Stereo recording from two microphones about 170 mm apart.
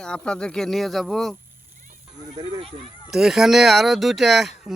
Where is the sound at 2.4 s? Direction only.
35° right (ahead or behind).